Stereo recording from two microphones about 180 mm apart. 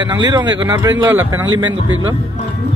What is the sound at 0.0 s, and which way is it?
A man's voice, 25° right (ahead or behind).